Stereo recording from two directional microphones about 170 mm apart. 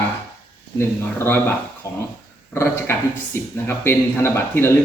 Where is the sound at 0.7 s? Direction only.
15° left (ahead or behind).